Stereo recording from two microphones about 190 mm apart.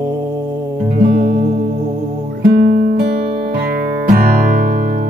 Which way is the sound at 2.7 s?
55° right (ahead or behind).